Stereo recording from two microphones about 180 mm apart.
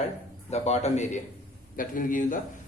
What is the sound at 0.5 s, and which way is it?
Speech, 40° left (ahead or behind).